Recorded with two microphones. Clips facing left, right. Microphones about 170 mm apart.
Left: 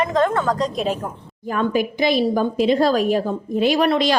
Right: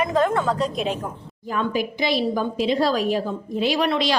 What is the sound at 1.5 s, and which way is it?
A woman's voice, 50° left (ahead or behind).